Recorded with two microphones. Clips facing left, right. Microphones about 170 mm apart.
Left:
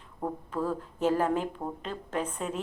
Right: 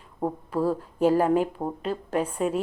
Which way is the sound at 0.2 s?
35° right (ahead or behind).